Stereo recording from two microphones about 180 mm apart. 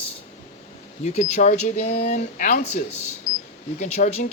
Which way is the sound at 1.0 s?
40° left (ahead or behind).